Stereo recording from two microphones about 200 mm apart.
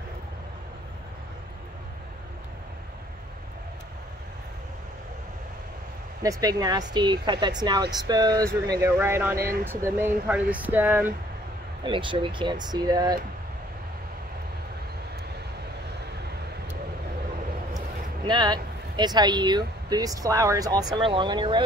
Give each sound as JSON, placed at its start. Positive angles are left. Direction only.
{"t": 6.2, "sound": "speech", "side_deg": -20}
{"t": 11.8, "sound": "speech", "side_deg": -25}
{"t": 17.7, "sound": "speech", "side_deg": -20}